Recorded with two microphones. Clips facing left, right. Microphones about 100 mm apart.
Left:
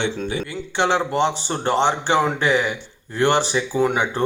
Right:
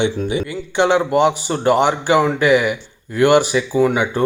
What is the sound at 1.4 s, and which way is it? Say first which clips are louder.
Speech: right 4 dB; 30° left (ahead or behind).